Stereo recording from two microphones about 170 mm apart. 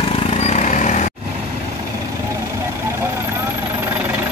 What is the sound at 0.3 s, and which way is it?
Vehicle, 40° left (ahead or behind).